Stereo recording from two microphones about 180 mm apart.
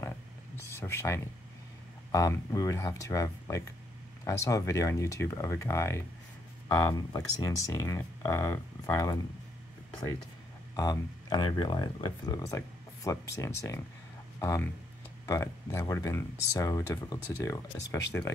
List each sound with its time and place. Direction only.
0.7 s speech: 15° left (ahead or behind)
9.8 s a sound: 25° left (ahead or behind)
10.8 s speech: 20° left (ahead or behind)